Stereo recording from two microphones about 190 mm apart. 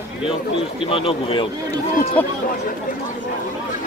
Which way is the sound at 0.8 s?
30° left (ahead or behind).